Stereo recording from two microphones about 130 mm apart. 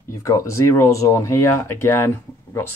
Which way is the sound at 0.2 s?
25° left (ahead or behind).